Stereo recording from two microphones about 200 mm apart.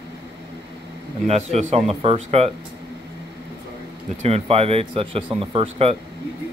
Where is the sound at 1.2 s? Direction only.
30° right (ahead or behind).